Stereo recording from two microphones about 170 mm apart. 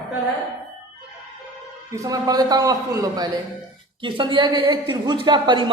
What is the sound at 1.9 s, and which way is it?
A man's voice, 20° right (ahead or behind).